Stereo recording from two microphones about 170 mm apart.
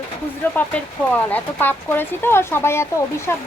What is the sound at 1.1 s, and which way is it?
Speech, 10° left (ahead or behind).